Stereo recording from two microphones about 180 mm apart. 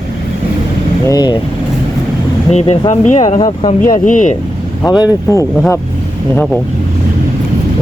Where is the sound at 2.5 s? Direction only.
35° left (ahead or behind).